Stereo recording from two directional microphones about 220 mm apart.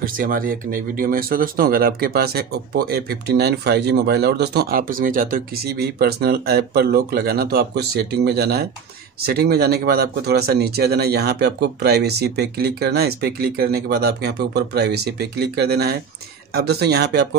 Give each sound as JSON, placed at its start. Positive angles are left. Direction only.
{"t": 0.0, "sound": "speech", "side_deg": -40}